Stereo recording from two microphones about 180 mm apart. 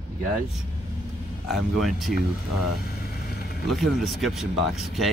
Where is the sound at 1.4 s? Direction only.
Centre (ahead or behind).